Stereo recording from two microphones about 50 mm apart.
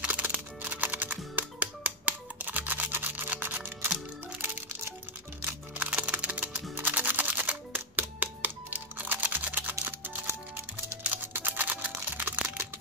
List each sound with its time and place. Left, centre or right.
0.0 s music: right
5.8 s music: right
11.1 s music: right